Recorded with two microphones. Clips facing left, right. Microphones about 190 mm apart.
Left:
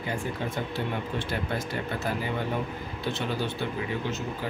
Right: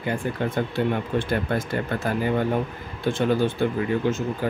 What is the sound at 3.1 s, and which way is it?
Speech, 50° right (ahead or behind).